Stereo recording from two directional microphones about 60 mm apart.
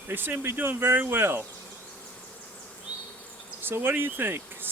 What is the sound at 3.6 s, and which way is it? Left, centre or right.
Insect, right.